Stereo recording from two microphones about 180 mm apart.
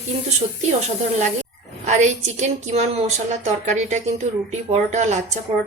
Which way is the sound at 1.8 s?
40° right (ahead or behind).